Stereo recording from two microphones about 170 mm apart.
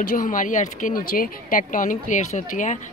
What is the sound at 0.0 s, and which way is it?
Speech, 50° left (ahead or behind).